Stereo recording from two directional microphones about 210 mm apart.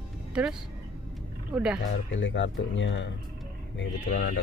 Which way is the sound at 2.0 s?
60° left (ahead or behind).